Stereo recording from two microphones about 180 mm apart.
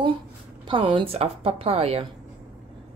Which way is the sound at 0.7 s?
25° right (ahead or behind).